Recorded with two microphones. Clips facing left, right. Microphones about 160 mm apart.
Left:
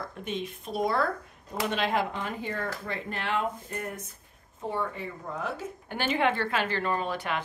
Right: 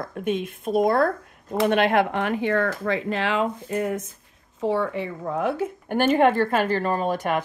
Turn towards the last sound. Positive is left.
turn(degrees=-45)  # may be behind; listen again after turning